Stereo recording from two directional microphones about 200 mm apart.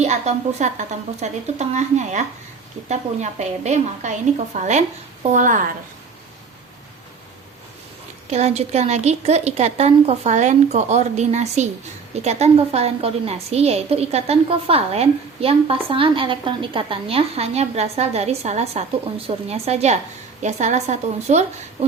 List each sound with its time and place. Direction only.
0.0 s a woman's voice: 35° right (ahead or behind)
8.3 s a woman's voice: 30° right (ahead or behind)